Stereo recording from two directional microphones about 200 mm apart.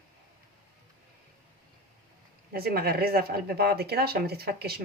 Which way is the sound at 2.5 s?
50° right (ahead or behind).